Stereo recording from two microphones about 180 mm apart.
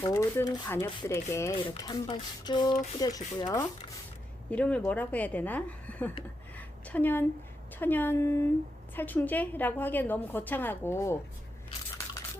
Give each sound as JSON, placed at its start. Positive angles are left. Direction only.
{"t": 0.0, "sound": "a woman's voice", "side_deg": 20}
{"t": 1.5, "sound": "speech", "side_deg": 25}
{"t": 4.5, "sound": "a woman's voice", "side_deg": 5}
{"t": 6.6, "sound": "a sound", "side_deg": 10}
{"t": 7.8, "sound": "a woman's voice", "side_deg": 10}